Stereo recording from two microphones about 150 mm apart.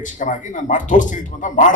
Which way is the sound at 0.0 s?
60° left (ahead or behind).